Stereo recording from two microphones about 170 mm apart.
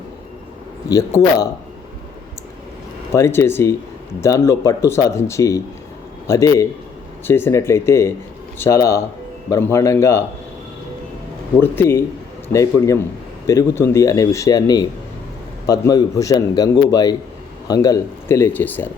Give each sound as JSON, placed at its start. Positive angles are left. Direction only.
{"t": 3.1, "sound": "a man's voice", "side_deg": 15}
{"t": 11.6, "sound": "a man's voice", "side_deg": 10}